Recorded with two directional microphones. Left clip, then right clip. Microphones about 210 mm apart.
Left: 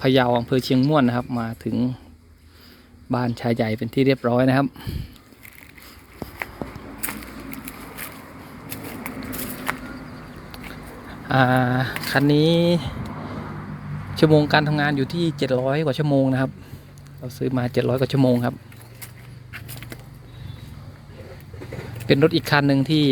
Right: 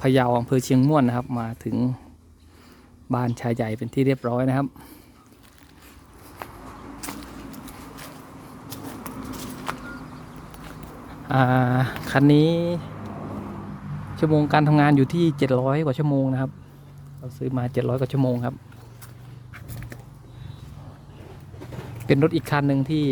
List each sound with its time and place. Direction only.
0.0 s speech: 10° right (ahead or behind)
3.1 s speech: 10° right (ahead or behind)
9.7 s a sound: 5° left (ahead or behind)
11.3 s speech: 5° right (ahead or behind)
14.2 s speech: 5° right (ahead or behind)
22.0 s speech: 10° right (ahead or behind)